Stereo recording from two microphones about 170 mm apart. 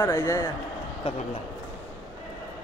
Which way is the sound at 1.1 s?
30° left (ahead or behind).